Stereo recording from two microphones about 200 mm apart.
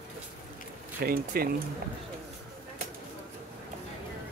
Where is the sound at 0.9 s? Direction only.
50° right (ahead or behind).